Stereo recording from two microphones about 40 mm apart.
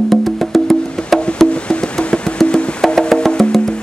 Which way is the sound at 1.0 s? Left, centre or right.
Left.